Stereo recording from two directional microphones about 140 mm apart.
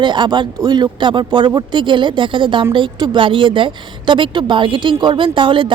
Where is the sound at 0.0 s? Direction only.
35° right (ahead or behind).